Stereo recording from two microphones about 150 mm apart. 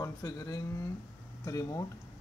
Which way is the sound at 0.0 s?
25° left (ahead or behind).